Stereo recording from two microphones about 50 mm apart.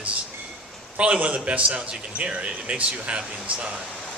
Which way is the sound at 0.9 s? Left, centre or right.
Right.